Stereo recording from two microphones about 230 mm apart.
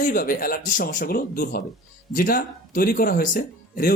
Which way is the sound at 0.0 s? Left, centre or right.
Left.